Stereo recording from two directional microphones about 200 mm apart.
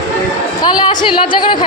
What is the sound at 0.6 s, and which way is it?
Speech, 20° left (ahead or behind).